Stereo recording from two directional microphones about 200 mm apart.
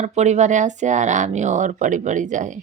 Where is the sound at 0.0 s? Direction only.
35° right (ahead or behind).